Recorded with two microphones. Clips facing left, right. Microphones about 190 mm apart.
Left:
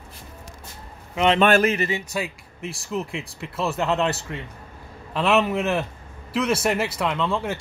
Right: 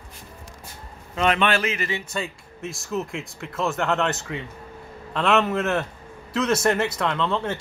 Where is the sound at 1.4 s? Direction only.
45° left (ahead or behind).